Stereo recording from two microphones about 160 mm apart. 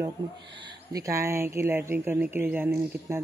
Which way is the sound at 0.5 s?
25° right (ahead or behind).